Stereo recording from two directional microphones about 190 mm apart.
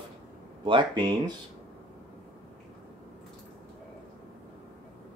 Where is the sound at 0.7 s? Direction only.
25° right (ahead or behind).